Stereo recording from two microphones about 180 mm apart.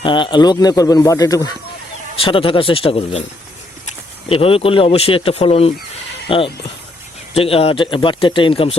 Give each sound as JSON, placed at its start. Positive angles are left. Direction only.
{"t": 0.0, "sound": "a man's voice", "side_deg": 25}
{"t": 4.3, "sound": "speech", "side_deg": 30}